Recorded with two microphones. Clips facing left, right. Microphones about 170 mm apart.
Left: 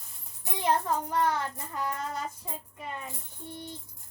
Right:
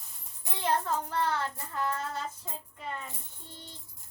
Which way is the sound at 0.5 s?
15° left (ahead or behind).